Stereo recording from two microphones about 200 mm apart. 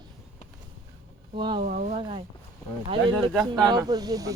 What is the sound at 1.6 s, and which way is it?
Speech, 40° right (ahead or behind).